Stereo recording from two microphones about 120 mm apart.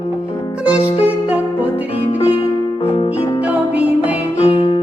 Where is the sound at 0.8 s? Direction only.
60° left (ahead or behind).